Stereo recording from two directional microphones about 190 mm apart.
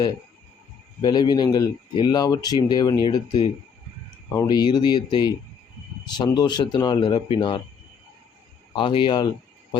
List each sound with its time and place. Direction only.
1.0 s speech: 20° left (ahead or behind)
8.7 s speech: 25° left (ahead or behind)